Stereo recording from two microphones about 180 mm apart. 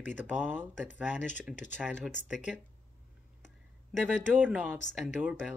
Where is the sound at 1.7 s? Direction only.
5° right (ahead or behind).